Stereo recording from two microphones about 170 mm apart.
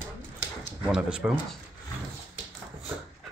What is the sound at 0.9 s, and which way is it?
Speech, 5° right (ahead or behind).